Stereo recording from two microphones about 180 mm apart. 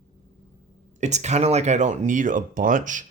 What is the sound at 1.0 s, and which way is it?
Speech, 40° right (ahead or behind).